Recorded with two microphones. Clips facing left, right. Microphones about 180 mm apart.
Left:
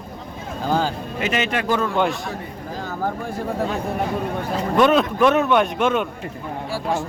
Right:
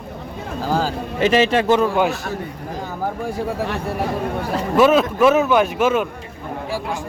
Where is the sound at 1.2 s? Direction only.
30° right (ahead or behind).